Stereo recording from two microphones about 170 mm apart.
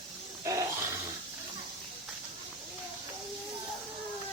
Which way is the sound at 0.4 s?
20° right (ahead or behind).